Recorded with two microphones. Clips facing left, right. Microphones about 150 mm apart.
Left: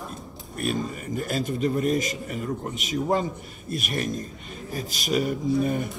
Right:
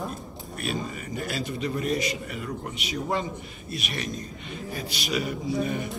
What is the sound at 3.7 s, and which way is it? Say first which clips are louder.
Speech: left 5 dB; 50° left (ahead or behind).